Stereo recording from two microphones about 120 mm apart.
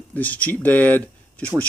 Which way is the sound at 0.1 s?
15° left (ahead or behind).